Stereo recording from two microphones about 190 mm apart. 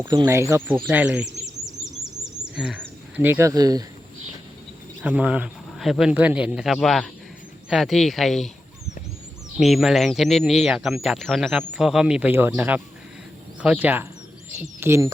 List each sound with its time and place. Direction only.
0.0 s speech: 20° right (ahead or behind)
2.4 s a sound: 5° right (ahead or behind)
3.2 s speech: 10° right (ahead or behind)
5.0 s speech: 5° right (ahead or behind)
9.6 s speech: centre (ahead or behind)